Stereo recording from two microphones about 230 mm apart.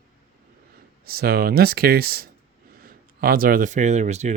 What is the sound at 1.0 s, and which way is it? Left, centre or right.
Speech, right.